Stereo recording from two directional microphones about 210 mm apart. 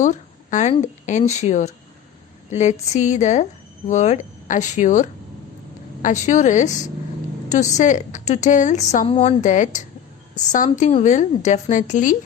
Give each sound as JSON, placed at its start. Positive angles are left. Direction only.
{"t": 0.0, "sound": "a woman's voice", "side_deg": 35}